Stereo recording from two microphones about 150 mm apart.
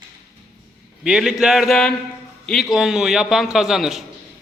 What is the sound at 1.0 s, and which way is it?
A man's voice, 5° right (ahead or behind).